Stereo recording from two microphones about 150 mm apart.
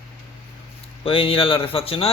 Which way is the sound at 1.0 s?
40° left (ahead or behind).